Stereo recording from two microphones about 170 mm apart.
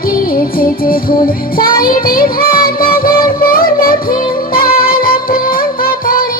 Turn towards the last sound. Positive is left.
turn(degrees=55)  # may be behind; listen again after turning